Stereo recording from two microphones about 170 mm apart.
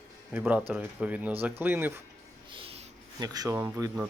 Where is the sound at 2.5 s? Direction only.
35° right (ahead or behind).